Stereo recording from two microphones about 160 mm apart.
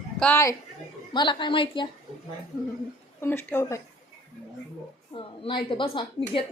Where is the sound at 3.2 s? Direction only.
15° left (ahead or behind).